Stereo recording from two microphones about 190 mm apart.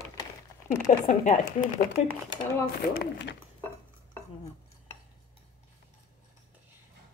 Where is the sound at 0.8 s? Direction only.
40° left (ahead or behind).